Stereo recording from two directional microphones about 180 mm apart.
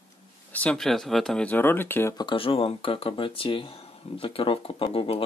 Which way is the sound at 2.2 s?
30° left (ahead or behind).